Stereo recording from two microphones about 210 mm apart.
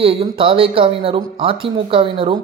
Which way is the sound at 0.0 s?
25° right (ahead or behind).